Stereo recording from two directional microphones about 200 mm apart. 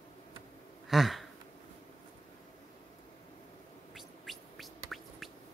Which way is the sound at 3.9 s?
Centre (ahead or behind).